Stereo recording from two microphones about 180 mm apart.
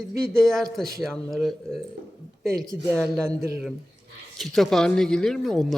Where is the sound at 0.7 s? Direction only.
Centre (ahead or behind).